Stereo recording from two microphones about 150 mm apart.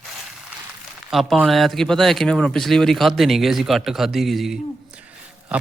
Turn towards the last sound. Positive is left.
turn(degrees=-5)  # may be behind; listen again after turning